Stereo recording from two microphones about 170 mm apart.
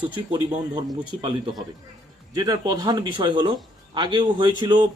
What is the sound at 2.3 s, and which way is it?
Speech, 25° right (ahead or behind).